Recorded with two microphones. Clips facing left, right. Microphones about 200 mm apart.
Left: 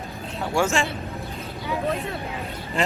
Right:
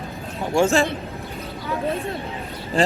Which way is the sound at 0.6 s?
35° right (ahead or behind).